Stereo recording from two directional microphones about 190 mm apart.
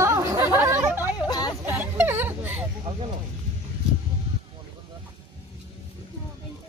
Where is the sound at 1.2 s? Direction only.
20° left (ahead or behind).